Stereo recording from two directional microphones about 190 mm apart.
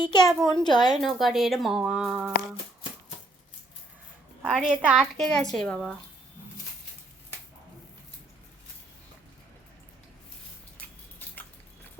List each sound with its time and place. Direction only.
0.0 s a woman's voice: 25° left (ahead or behind)
0.3 s a woman's voice: centre (ahead or behind)
0.6 s a woman's voice: 20° left (ahead or behind)
1.0 s a woman's voice: centre (ahead or behind)
4.4 s a woman's voice: 5° right (ahead or behind)